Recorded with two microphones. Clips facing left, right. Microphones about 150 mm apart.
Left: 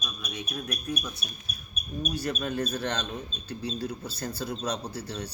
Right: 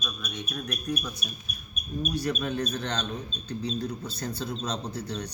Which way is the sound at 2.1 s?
Centre (ahead or behind).